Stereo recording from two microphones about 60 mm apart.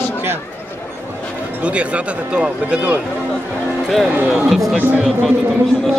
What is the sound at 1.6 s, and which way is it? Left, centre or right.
Speech, right.